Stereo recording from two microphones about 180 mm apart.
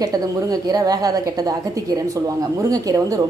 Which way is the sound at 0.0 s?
20° right (ahead or behind).